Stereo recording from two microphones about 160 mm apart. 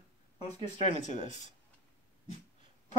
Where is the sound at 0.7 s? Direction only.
45° left (ahead or behind).